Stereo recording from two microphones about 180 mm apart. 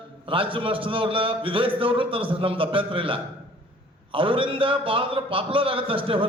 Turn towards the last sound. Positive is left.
turn(degrees=-30)  # may be behind; listen again after turning